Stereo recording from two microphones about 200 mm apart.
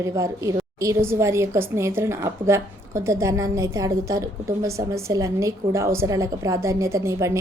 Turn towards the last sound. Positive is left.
turn(degrees=-15)  # may be behind; listen again after turning